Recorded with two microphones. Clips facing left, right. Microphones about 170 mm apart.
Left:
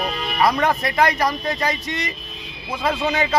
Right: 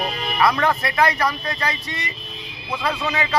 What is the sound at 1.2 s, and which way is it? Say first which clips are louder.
Speech: left 1 dB; 40° left (ahead or behind).